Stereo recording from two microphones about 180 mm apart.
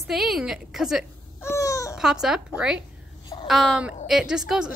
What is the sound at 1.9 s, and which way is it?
Speech, 5° right (ahead or behind).